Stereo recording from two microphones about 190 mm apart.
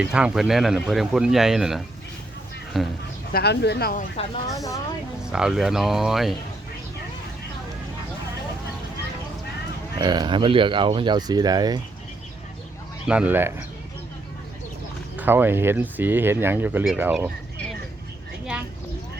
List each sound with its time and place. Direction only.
0.0 s speech: 5° right (ahead or behind)
3.3 s speech: 60° left (ahead or behind)
4.4 s a woman's voice: 15° left (ahead or behind)
5.2 s speech: 5° right (ahead or behind)
10.0 s speech: 20° right (ahead or behind)
13.1 s speech: 5° right (ahead or behind)
15.1 s speech: 10° right (ahead or behind)